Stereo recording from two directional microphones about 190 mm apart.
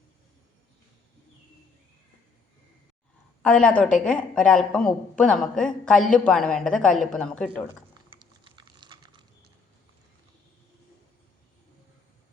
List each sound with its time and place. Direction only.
3.4 s a woman's voice: 5° left (ahead or behind)
8.1 s typing: 25° right (ahead or behind)